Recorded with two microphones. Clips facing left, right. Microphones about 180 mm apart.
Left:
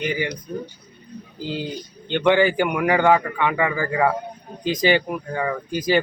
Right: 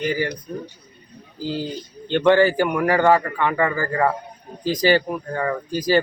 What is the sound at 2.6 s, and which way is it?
Speech, 15° left (ahead or behind).